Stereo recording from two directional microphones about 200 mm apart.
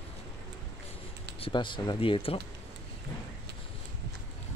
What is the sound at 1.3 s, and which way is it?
Speech, 25° left (ahead or behind).